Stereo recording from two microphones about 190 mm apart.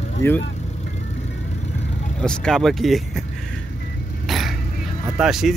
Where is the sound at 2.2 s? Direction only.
5° left (ahead or behind).